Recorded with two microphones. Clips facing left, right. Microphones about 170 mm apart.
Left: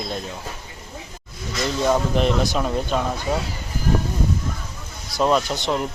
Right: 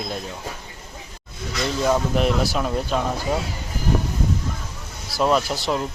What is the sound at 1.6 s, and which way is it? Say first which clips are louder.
Speech: left 1 dB; centre (ahead or behind).